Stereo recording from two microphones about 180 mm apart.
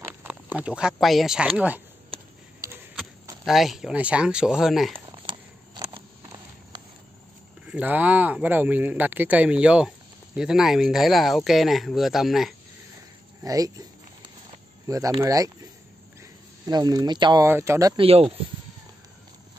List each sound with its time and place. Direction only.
0.1 s a sound: 10° right (ahead or behind)
0.9 s speech: centre (ahead or behind)
3.4 s speech: centre (ahead or behind)
4.9 s a sound: 25° right (ahead or behind)
7.6 s speech: 10° right (ahead or behind)
13.4 s speech: 20° right (ahead or behind)
14.9 s speech: 20° right (ahead or behind)
18.0 s speech: 30° right (ahead or behind)